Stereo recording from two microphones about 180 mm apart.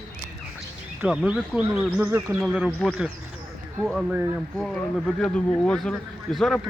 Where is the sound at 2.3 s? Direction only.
15° right (ahead or behind).